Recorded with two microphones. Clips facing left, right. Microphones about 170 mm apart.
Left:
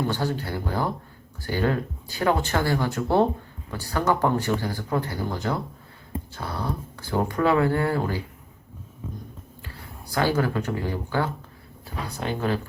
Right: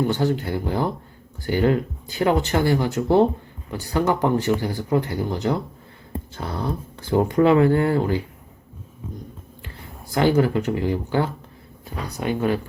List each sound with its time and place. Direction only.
0.1 s speech: 20° right (ahead or behind)
10.1 s speech: 20° right (ahead or behind)